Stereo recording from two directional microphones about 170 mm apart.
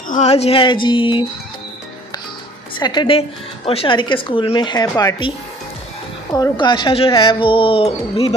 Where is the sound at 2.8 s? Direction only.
25° left (ahead or behind).